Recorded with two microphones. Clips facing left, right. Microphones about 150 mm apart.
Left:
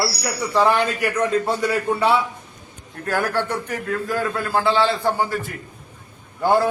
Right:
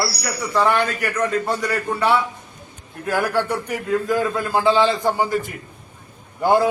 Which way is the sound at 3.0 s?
10° right (ahead or behind).